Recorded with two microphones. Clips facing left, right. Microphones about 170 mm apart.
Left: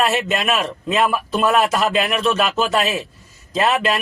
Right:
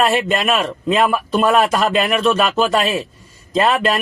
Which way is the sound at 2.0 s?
50° right (ahead or behind).